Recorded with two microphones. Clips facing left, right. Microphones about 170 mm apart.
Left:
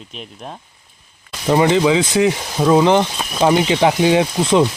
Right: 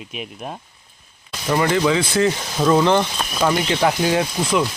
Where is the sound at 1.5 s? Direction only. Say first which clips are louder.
Left 4 dB; 20° left (ahead or behind).